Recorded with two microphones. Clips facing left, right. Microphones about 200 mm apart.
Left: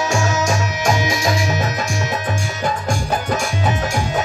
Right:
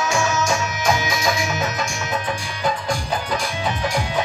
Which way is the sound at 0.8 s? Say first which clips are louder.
Left 2 dB; 35° left (ahead or behind).